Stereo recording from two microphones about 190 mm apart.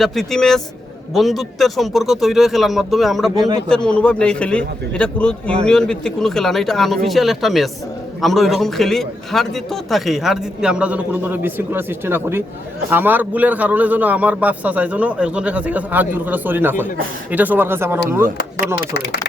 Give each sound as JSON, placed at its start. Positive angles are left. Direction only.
{"t": 0.0, "sound": "a man's voice", "side_deg": 0}
{"t": 18.9, "sound": "speech", "side_deg": 60}